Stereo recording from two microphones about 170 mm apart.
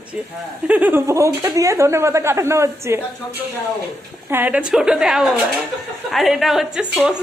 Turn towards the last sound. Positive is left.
turn(degrees=-5)  # may be behind; listen again after turning